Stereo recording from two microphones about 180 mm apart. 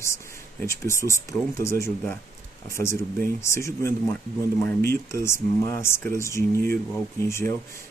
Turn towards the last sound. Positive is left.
turn(degrees=15)  # may be behind; listen again after turning